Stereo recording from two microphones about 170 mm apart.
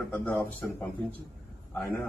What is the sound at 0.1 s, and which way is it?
Speech, 10° left (ahead or behind).